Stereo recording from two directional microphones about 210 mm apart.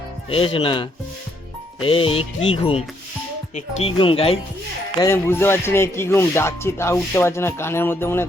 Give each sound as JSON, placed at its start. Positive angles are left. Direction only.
{"t": 0.3, "sound": "music", "side_deg": 25}
{"t": 1.9, "sound": "music", "side_deg": 25}
{"t": 4.9, "sound": "speech", "side_deg": 15}